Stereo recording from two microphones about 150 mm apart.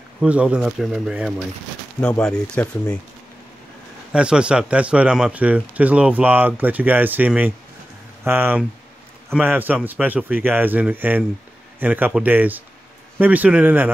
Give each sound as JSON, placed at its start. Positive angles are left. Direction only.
{"t": 0.2, "sound": "speech", "side_deg": -10}
{"t": 4.1, "sound": "speech", "side_deg": -5}